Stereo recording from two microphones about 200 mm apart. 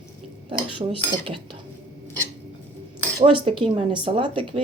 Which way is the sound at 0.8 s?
30° right (ahead or behind).